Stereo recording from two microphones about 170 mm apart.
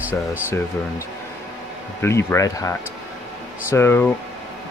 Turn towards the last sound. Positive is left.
turn(degrees=15)  # may be behind; listen again after turning